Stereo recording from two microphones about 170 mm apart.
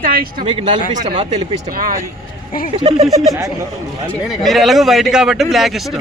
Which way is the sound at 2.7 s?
35° right (ahead or behind).